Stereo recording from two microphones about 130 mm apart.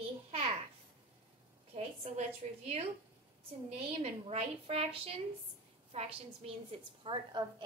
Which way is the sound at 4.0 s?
55° right (ahead or behind).